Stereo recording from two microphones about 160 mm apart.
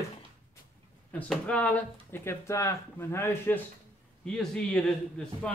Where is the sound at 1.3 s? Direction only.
10° left (ahead or behind).